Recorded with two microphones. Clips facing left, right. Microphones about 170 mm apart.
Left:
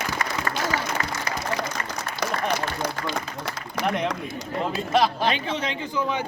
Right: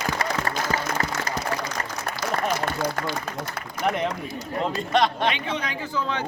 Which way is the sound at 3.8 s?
80° left.